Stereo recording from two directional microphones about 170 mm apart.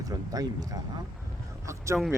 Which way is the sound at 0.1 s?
20° right (ahead or behind).